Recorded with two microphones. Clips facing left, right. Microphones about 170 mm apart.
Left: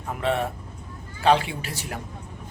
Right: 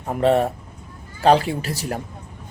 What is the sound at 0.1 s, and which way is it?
Speech, 40° right (ahead or behind).